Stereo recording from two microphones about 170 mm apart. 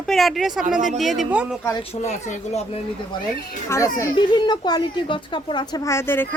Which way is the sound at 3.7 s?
15° left (ahead or behind).